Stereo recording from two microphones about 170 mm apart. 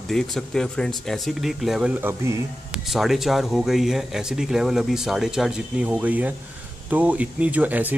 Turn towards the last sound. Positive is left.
turn(degrees=-10)  # may be behind; listen again after turning